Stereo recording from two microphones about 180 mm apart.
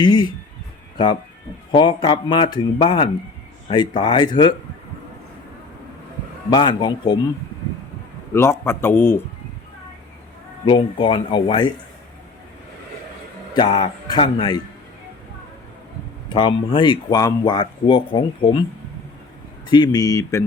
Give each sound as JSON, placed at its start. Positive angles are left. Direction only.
{"t": 0.0, "sound": "speech", "side_deg": 25}
{"t": 1.7, "sound": "speech", "side_deg": 30}
{"t": 6.5, "sound": "speech", "side_deg": 25}
{"t": 8.3, "sound": "a man's voice", "side_deg": 15}
{"t": 10.7, "sound": "speech", "side_deg": 25}
{"t": 13.6, "sound": "speech", "side_deg": 30}
{"t": 16.3, "sound": "speech", "side_deg": 25}
{"t": 19.6, "sound": "speech", "side_deg": 25}